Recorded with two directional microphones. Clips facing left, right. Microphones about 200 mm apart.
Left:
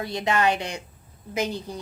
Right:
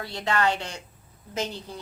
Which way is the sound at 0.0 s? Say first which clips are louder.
Left 2 dB; 15° left (ahead or behind).